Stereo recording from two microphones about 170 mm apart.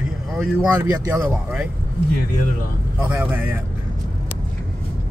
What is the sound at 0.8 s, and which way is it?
Speech, 15° right (ahead or behind).